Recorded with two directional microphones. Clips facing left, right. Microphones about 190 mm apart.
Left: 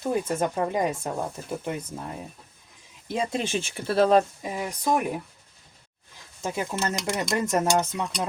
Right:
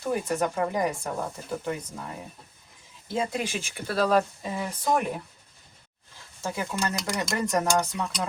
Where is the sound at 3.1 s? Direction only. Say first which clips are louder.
Left 2 dB; 20° left (ahead or behind).